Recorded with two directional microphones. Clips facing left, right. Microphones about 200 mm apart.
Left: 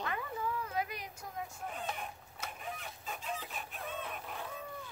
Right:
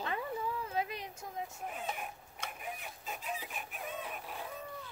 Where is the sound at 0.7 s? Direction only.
25° right (ahead or behind).